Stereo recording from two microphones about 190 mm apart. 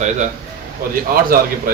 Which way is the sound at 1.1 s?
50° right (ahead or behind).